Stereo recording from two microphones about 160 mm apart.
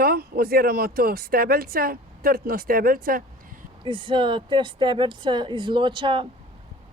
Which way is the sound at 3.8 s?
30° right (ahead or behind).